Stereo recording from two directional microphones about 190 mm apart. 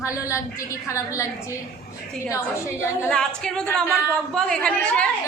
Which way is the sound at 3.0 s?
5° left (ahead or behind).